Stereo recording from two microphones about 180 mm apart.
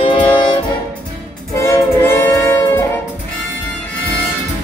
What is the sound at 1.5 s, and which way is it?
Music, 15° left (ahead or behind).